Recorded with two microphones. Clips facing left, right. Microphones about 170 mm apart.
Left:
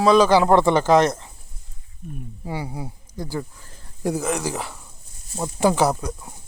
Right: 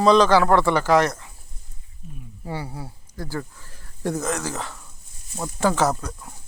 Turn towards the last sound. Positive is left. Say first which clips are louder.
# left 2 dB
turn(degrees=15)  # may be behind; listen again after turning